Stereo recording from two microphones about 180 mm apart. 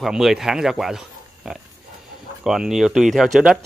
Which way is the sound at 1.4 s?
Centre (ahead or behind).